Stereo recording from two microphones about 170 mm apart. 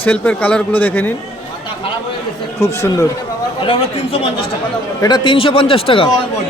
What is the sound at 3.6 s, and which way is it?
A man's voice, 35° left (ahead or behind).